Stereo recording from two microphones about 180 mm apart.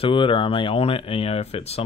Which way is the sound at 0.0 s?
30° left (ahead or behind).